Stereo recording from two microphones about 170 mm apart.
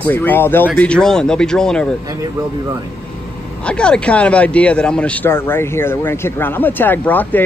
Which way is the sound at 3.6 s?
5° left (ahead or behind).